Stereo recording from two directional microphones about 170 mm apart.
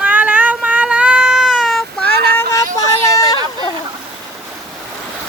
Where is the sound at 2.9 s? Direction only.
20° left (ahead or behind).